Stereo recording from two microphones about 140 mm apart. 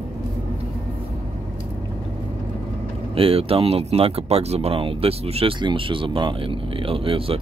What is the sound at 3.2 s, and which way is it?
Speech, 45° right (ahead or behind).